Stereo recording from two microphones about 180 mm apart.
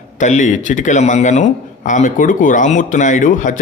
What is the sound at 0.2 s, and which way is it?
Speech, 40° left (ahead or behind).